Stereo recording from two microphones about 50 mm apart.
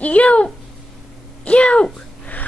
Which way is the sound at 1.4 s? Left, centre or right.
Left.